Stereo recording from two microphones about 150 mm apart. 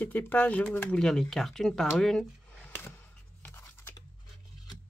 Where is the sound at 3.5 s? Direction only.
20° left (ahead or behind).